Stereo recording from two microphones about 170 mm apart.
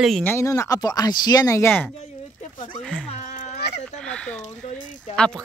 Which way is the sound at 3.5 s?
75° left (ahead or behind).